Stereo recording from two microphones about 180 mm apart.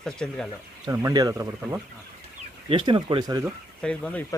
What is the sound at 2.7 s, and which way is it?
Speech, 30° right (ahead or behind).